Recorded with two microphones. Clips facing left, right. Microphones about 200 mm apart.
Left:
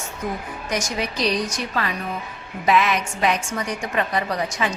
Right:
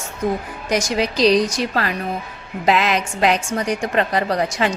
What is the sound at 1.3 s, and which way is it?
Speech, 35° right (ahead or behind).